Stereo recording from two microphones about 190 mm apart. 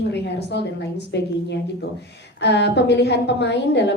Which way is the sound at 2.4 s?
65° left (ahead or behind).